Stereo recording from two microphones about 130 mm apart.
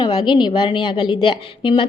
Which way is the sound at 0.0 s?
35° left (ahead or behind).